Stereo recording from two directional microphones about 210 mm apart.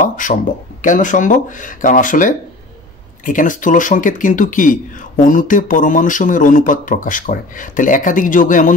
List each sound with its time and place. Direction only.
0.1 s speech: 35° left (ahead or behind)